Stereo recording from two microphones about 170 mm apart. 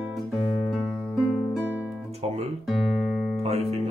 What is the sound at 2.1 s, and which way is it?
Guitar, 40° right (ahead or behind).